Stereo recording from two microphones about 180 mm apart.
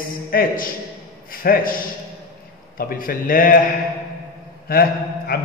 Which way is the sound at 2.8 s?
50° left (ahead or behind).